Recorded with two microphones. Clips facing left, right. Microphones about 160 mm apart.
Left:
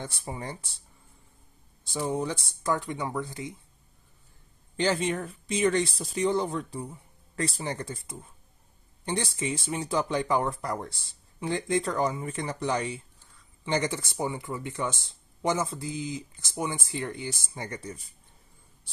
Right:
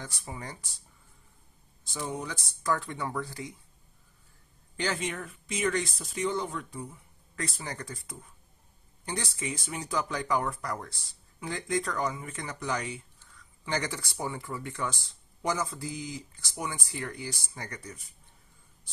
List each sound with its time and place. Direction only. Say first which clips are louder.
0.0 s speech: left 4 dB; 30° left (ahead or behind)
2.0 s speech: left 7 dB; 30° left (ahead or behind)
4.7 s speech: left 6 dB; 30° left (ahead or behind)